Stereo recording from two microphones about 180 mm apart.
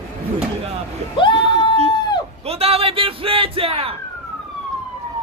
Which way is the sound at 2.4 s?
35° right (ahead or behind).